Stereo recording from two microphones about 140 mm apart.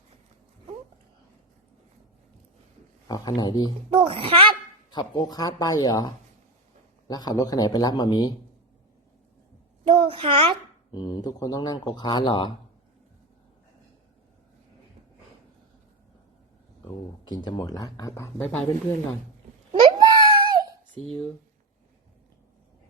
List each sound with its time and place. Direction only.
3.1 s speech: 25° left (ahead or behind)
3.9 s a child's voice: 35° right (ahead or behind)
4.9 s speech: 30° left (ahead or behind)
7.1 s speech: 30° left (ahead or behind)
9.8 s a child's voice: 40° right (ahead or behind)
10.9 s speech: 30° left (ahead or behind)
17.2 s speech: 30° left (ahead or behind); by 18.6 s 15° left (ahead or behind)
19.8 s a sound: 30° right (ahead or behind)